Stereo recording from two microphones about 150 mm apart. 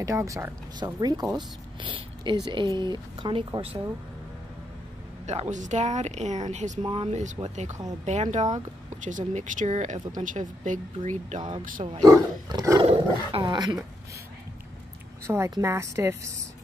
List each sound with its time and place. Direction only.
0.0 s speech: 20° right (ahead or behind)
5.2 s speech: 50° right (ahead or behind)
6.8 s speech: 35° right (ahead or behind); by 11.4 s 55° right (ahead or behind)
12.0 s speech: 25° right (ahead or behind)
12.8 s speech: 40° right (ahead or behind)
15.2 s a woman's voice: 15° right (ahead or behind)